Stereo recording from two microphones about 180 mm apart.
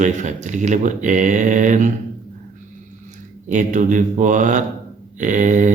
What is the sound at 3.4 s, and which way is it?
A man's voice, 45° right (ahead or behind).